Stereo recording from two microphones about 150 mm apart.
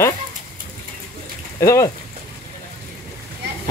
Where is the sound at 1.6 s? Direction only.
20° left (ahead or behind).